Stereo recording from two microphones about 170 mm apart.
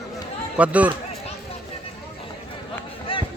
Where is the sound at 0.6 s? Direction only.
10° right (ahead or behind).